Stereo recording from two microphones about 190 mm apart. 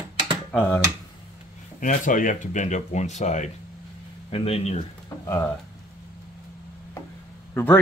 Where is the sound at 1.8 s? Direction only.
45° left (ahead or behind).